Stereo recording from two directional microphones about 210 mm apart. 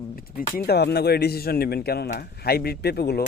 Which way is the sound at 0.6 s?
50° left (ahead or behind).